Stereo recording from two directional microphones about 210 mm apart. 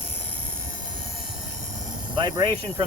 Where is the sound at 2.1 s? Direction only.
20° right (ahead or behind).